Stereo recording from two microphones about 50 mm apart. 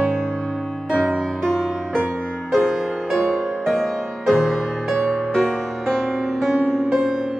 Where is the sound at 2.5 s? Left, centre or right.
Centre.